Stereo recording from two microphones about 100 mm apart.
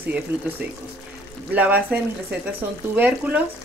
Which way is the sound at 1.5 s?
15° right (ahead or behind).